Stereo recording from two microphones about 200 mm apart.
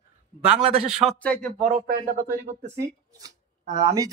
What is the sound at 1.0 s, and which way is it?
Speech, 5° left (ahead or behind).